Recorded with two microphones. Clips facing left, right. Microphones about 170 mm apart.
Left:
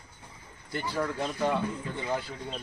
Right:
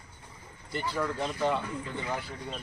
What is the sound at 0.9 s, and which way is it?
Speech, 10° left (ahead or behind).